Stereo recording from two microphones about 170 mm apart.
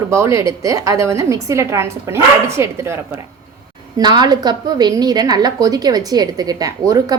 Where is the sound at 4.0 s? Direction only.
25° right (ahead or behind).